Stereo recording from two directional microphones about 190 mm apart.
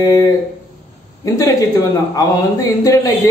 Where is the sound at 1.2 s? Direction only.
20° left (ahead or behind).